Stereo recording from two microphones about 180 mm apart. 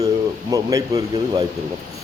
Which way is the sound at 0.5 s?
20° right (ahead or behind).